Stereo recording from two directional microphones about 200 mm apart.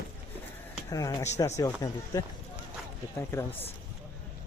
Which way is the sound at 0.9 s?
15° left (ahead or behind).